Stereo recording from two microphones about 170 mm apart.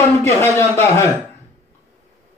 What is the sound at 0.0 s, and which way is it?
Speech, 15° left (ahead or behind).